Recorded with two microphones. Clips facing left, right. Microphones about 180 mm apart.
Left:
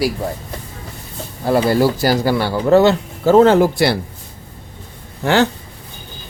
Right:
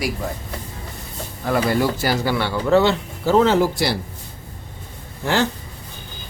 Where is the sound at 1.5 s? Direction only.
30° left (ahead or behind); by 3.9 s 55° left (ahead or behind).